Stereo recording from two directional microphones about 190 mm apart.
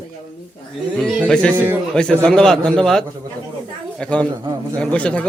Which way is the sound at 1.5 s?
10° right (ahead or behind).